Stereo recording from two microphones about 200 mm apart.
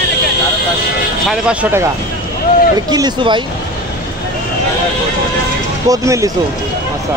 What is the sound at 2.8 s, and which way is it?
Speech, 20° right (ahead or behind).